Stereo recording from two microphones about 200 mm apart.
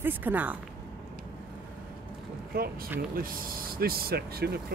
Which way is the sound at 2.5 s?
50° right (ahead or behind).